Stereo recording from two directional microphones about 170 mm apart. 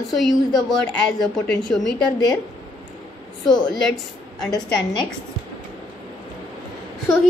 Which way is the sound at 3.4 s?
Centre (ahead or behind).